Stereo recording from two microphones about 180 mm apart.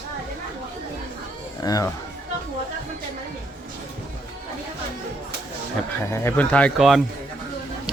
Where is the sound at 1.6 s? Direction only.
20° left (ahead or behind).